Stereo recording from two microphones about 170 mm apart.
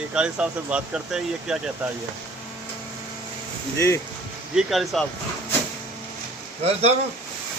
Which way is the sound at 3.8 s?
15° left (ahead or behind).